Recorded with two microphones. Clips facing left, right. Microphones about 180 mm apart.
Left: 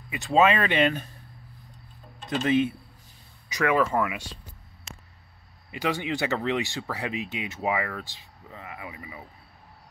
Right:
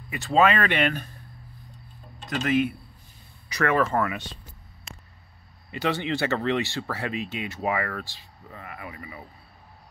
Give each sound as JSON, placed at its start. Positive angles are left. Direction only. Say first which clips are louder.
{"t": 0.1, "sound": "speech", "louder": "even", "side_deg": 15}
{"t": 2.2, "sound": "speech", "louder": "left 1 dB", "side_deg": 25}
{"t": 3.4, "sound": "speech", "louder": "even", "side_deg": 15}
{"t": 5.7, "sound": "speech", "louder": "right 1 dB", "side_deg": 10}